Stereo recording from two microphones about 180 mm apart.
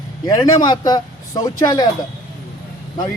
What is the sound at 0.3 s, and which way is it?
Speech, 20° left (ahead or behind).